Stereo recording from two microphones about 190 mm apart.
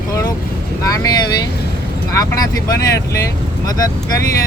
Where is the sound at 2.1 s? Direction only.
20° left (ahead or behind).